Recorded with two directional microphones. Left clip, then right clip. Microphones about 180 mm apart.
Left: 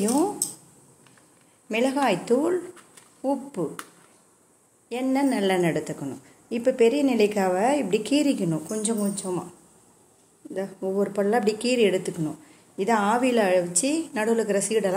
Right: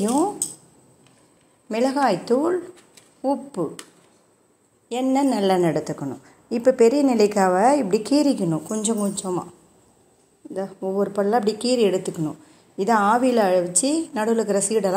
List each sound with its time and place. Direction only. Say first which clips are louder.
0.0 s speech: right 2 dB; centre (ahead or behind)
1.7 s a woman's voice: right 3 dB; 10° right (ahead or behind)
4.8 s a woman's voice: right 4 dB; 30° right (ahead or behind)
10.5 s a woman's voice: right 2 dB; 10° right (ahead or behind)